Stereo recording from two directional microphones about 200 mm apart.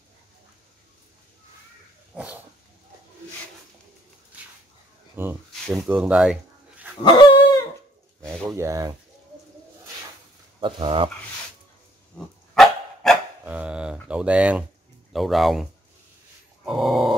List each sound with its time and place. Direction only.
2.1 s dog: 5° right (ahead or behind)
5.1 s a sound: 10° right (ahead or behind)
5.8 s speech: 5° right (ahead or behind)
7.0 s dog: 25° left (ahead or behind)
8.2 s a sound: 15° right (ahead or behind)
10.6 s speech: 25° right (ahead or behind)
12.5 s dog: centre (ahead or behind)
14.0 s speech: 5° right (ahead or behind)
16.6 s dog: centre (ahead or behind)